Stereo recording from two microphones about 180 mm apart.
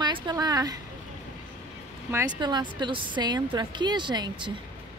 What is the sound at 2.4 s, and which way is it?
A woman's voice, 25° right (ahead or behind).